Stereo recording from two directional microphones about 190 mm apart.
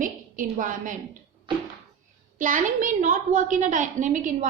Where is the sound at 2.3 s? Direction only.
45° right (ahead or behind).